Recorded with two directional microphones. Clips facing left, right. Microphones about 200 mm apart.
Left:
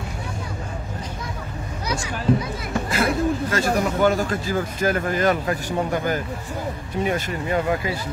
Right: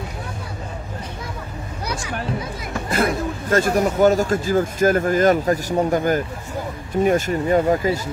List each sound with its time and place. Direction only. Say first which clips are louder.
2.9 s a man's voice: even; 50° right (ahead or behind)